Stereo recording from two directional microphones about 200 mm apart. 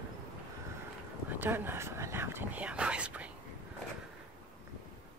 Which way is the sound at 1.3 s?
10° right (ahead or behind).